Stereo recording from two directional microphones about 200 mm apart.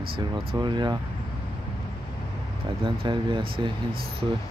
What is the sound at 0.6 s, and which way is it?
Speech, 20° right (ahead or behind).